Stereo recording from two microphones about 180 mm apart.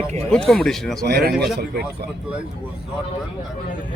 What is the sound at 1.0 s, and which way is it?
Speech, 60° right (ahead or behind).